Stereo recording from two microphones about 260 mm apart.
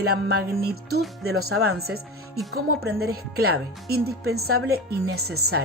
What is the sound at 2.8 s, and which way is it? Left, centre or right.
Speech, right.